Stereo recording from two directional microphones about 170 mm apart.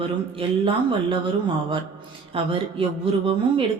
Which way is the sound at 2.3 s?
35° right (ahead or behind).